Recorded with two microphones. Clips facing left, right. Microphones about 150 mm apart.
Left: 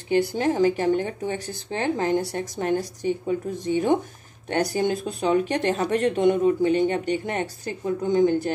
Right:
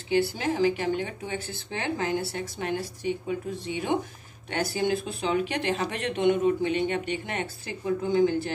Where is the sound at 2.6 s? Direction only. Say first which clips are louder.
Left 7 dB; 45° left (ahead or behind).